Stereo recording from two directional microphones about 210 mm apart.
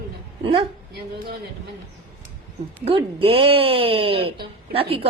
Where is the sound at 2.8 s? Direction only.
25° right (ahead or behind).